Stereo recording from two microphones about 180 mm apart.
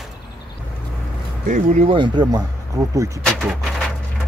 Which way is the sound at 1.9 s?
25° right (ahead or behind).